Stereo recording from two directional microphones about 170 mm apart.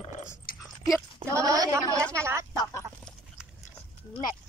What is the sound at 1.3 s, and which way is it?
A woman's voice, 20° right (ahead or behind).